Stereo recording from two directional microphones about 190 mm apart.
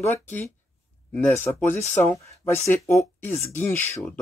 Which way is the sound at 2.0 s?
10° left (ahead or behind).